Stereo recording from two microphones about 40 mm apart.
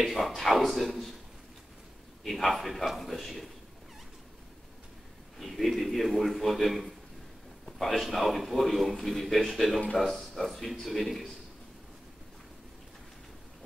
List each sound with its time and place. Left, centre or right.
0.0 s a man's voice: centre
2.2 s a man's voice: centre
5.4 s a man's voice: centre